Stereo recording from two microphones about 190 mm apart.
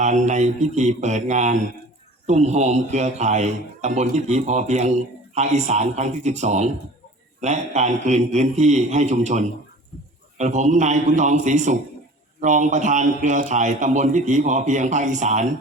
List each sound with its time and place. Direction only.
0.0 s a man's voice: 40° right (ahead or behind)